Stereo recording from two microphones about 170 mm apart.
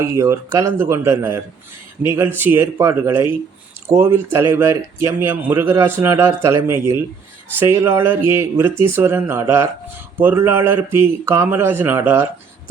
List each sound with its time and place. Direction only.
0.0 s speech: 15° right (ahead or behind)